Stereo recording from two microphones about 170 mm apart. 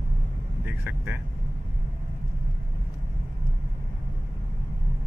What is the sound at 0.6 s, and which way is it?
Speech, 10° right (ahead or behind).